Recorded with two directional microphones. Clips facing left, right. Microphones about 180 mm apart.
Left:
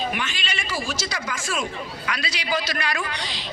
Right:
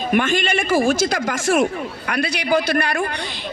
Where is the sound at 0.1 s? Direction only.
50° right (ahead or behind).